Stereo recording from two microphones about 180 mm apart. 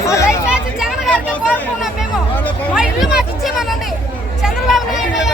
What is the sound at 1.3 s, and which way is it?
Chatter, 10° left (ahead or behind).